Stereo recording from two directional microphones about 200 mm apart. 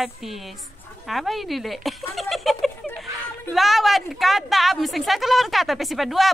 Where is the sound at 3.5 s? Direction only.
Centre (ahead or behind).